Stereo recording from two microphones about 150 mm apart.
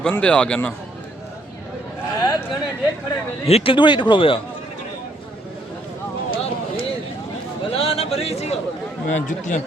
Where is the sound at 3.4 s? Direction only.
40° left (ahead or behind).